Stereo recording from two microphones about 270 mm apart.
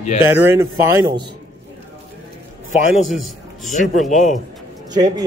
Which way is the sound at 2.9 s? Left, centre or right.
Centre.